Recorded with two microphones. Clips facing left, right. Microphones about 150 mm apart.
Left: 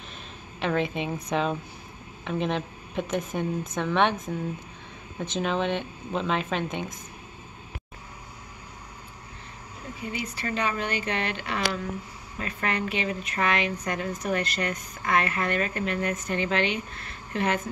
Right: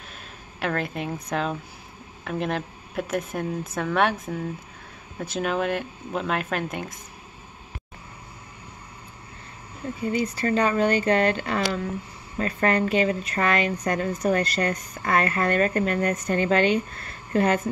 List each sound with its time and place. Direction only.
0.6 s a woman's voice: centre (ahead or behind)
10.1 s speech: 40° right (ahead or behind)